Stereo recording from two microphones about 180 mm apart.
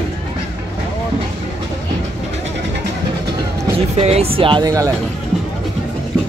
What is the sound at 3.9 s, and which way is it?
Speech, 35° right (ahead or behind).